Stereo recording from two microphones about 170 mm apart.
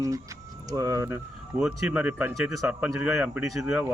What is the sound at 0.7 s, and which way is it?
Speech, 20° right (ahead or behind).